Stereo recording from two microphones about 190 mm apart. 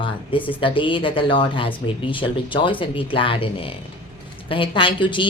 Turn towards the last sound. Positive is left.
turn(degrees=25)  # may be behind; listen again after turning